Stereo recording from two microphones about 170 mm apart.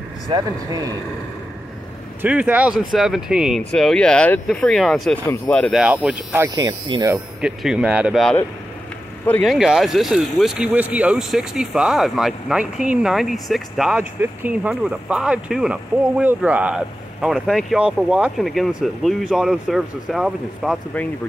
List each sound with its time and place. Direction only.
0.3 s speech: 20° right (ahead or behind)
2.2 s speech: 10° right (ahead or behind); by 5.8 s 10° left (ahead or behind)
6.0 s speech: 10° right (ahead or behind)
7.4 s speech: 5° right (ahead or behind)
9.5 s speech: 5° right (ahead or behind)